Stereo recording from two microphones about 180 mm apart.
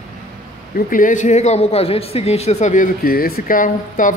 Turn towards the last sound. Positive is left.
turn(degrees=50)  # may be behind; listen again after turning